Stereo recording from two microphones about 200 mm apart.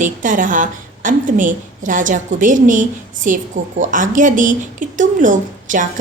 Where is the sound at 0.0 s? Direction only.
40° right (ahead or behind).